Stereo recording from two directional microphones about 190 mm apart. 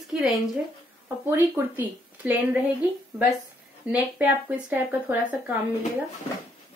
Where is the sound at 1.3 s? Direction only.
10° right (ahead or behind).